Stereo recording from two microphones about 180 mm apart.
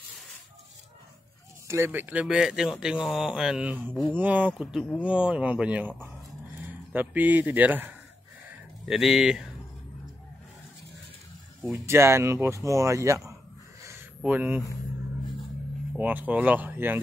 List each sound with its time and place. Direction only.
1.7 s speech: 15° right (ahead or behind)
11.6 s speech: 15° right (ahead or behind)
13.8 s a sound: 10° right (ahead or behind)
16.0 s speech: 10° right (ahead or behind)